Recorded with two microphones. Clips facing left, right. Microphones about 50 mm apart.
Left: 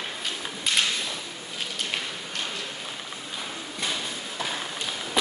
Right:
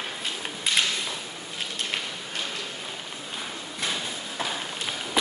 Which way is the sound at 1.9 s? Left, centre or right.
Centre.